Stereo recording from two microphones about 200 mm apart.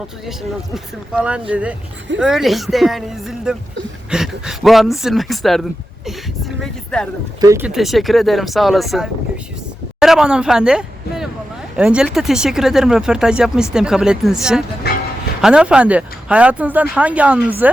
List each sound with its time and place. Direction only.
0.3 s speech: 5° right (ahead or behind)
7.4 s speech: 15° right (ahead or behind)
7.7 s speech: centre (ahead or behind)
14.8 s music: 55° left (ahead or behind)
15.4 s speech: 5° right (ahead or behind)